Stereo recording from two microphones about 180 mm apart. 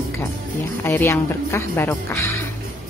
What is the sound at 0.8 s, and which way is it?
Speech, 15° left (ahead or behind).